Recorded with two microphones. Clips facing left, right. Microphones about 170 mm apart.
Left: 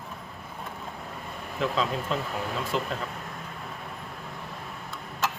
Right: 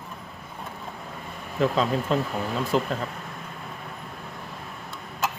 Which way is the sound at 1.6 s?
40° right (ahead or behind).